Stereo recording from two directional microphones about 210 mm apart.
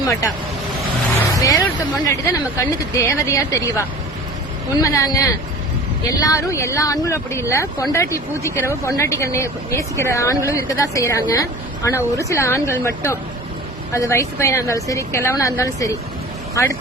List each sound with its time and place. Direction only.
1.3 s speech: 15° left (ahead or behind)